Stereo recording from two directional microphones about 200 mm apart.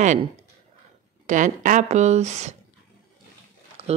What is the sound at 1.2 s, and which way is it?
Speech, 40° right (ahead or behind).